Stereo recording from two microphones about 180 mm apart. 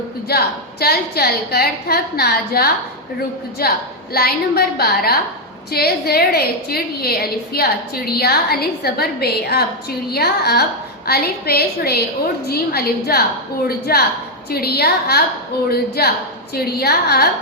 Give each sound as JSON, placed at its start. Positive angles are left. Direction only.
{"t": 0.3, "sound": "a woman's voice", "side_deg": 60}